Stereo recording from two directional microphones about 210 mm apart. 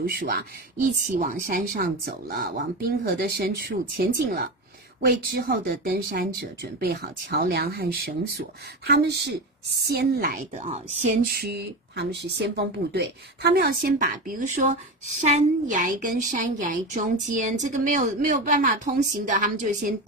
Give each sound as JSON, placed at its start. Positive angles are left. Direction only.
{"t": 0.0, "sound": "speech", "side_deg": -45}
{"t": 10.5, "sound": "a woman's voice", "side_deg": -30}
{"t": 11.3, "sound": "a woman's voice", "side_deg": -50}